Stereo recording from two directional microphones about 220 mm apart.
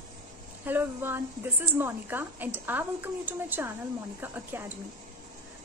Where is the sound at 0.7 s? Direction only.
10° right (ahead or behind).